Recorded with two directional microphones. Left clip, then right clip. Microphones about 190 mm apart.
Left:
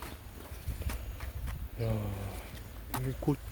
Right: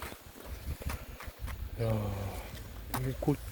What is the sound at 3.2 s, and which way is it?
Speech, 20° left (ahead or behind).